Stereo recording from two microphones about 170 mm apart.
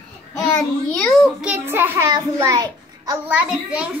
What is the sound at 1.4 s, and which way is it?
A child's voice, 10° right (ahead or behind).